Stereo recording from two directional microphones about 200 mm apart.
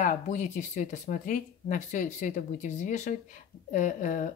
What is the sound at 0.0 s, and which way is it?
Speech, 40° left (ahead or behind).